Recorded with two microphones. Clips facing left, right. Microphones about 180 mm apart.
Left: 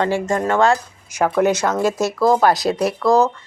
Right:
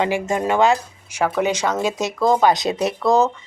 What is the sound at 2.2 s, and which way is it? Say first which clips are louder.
Speech: left 1 dB; 5° left (ahead or behind).